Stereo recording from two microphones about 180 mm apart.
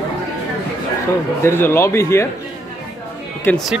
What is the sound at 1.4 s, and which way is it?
Speech, 15° left (ahead or behind).